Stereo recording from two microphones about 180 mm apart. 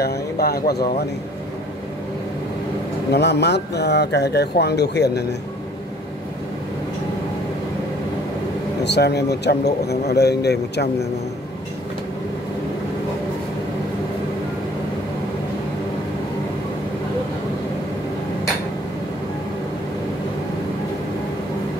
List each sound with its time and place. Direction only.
0.0 s a man's voice: 60° left (ahead or behind)
3.1 s speech: 70° left (ahead or behind)
8.8 s a man's voice: 70° left (ahead or behind)